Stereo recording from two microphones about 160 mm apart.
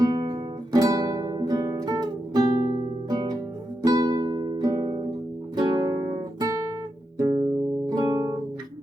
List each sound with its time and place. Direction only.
0.0 s guitar: 25° right (ahead or behind)
3.1 s music: 25° right (ahead or behind)